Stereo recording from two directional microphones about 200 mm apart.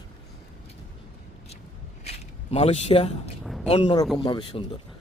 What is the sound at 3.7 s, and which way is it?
Speech, 30° left (ahead or behind).